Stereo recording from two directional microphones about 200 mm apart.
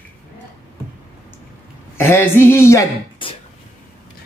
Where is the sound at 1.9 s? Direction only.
10° left (ahead or behind).